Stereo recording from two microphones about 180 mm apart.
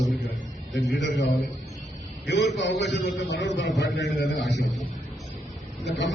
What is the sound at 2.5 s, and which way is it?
Speech, 80° left.